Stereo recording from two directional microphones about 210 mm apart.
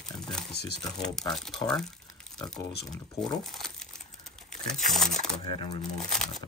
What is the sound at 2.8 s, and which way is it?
Speech, 5° left (ahead or behind).